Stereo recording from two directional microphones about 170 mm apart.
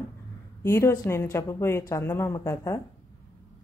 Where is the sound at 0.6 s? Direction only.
15° left (ahead or behind).